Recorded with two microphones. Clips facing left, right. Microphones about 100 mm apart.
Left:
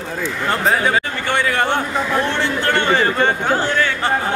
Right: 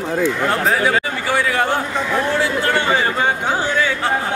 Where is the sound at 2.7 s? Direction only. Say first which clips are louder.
Left 3 dB; 10° right (ahead or behind).